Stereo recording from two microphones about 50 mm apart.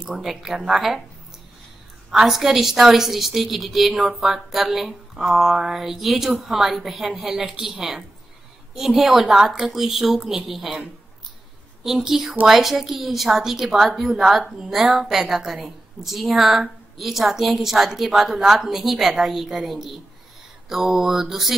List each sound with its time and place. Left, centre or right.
0.0 s a woman's voice: centre
2.0 s a woman's voice: centre